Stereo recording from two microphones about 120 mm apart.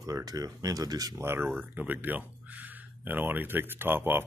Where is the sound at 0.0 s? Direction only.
30° right (ahead or behind).